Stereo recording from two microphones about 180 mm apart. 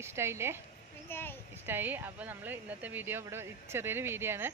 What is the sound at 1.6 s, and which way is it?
Speech, 10° right (ahead or behind).